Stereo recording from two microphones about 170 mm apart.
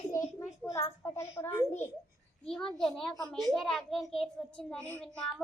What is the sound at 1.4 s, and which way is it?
A child's voice, 10° left (ahead or behind).